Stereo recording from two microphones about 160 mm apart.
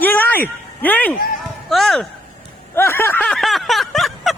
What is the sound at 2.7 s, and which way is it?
Snicker, 15° left (ahead or behind).